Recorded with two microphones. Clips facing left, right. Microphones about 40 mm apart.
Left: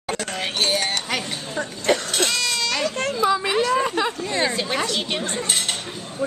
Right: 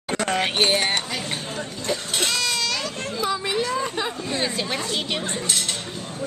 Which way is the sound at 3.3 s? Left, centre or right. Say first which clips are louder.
Left 3 dB; left.